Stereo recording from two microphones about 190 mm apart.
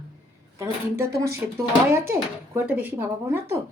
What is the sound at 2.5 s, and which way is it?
Speech, 10° right (ahead or behind).